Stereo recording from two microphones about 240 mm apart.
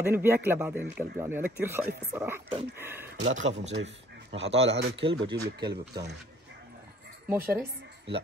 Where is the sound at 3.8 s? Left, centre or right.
Right.